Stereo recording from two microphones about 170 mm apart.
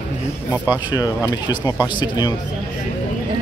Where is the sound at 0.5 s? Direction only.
10° right (ahead or behind).